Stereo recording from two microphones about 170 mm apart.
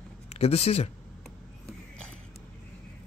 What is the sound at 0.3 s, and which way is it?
Speech, 40° left (ahead or behind).